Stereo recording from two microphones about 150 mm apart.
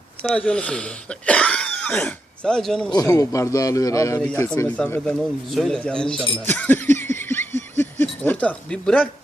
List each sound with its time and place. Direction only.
0.2 s speech: 5° left (ahead or behind)
2.9 s a man's voice: 25° left (ahead or behind)
4.3 s speech: 5° left (ahead or behind)
6.4 s a sound: 10° left (ahead or behind)
7.8 s speech: 10° left (ahead or behind)